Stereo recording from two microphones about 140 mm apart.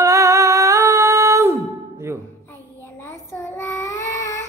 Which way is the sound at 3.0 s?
15° left (ahead or behind).